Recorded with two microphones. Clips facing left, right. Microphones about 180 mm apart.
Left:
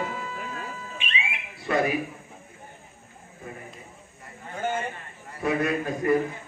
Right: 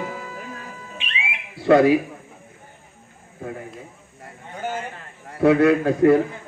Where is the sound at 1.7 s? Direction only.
80° right.